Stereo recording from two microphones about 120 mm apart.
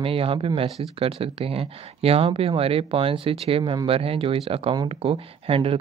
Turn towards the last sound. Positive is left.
turn(degrees=-50)  # may be behind; listen again after turning